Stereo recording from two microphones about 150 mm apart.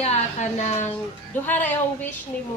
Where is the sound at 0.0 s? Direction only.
50° left (ahead or behind).